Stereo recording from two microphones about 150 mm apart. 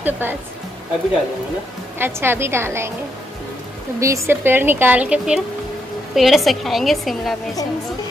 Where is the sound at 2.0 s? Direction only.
15° right (ahead or behind).